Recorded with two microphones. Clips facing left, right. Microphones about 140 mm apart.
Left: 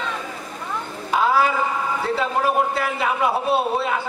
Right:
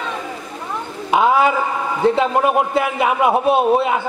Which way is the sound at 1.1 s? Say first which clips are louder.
Right 4 dB; 20° right (ahead or behind).